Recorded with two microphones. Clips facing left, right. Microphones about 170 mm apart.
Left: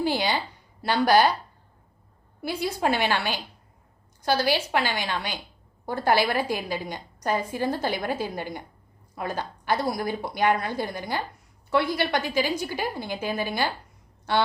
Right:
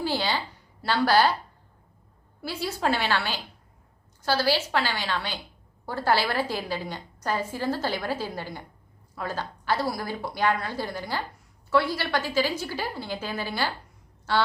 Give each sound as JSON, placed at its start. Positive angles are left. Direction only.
{"t": 0.0, "sound": "a woman's voice", "side_deg": 15}
{"t": 2.4, "sound": "a woman's voice", "side_deg": 15}